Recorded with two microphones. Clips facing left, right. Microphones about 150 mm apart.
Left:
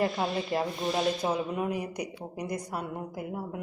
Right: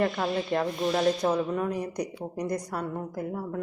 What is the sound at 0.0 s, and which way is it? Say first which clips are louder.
Speech: right 2 dB; 10° left (ahead or behind).